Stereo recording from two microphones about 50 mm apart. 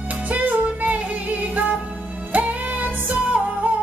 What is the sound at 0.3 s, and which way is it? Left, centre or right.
Music, right.